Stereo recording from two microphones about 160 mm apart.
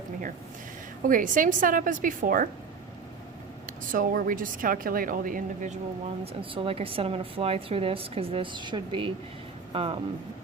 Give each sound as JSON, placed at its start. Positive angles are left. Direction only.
{"t": 1.0, "sound": "a woman's voice", "side_deg": -55}
{"t": 3.7, "sound": "a woman's voice", "side_deg": -60}
{"t": 6.4, "sound": "speech", "side_deg": -35}